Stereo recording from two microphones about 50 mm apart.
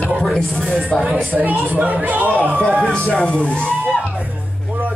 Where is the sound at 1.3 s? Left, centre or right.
Right.